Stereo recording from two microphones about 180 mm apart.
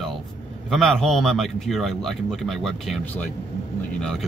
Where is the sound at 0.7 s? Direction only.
Centre (ahead or behind).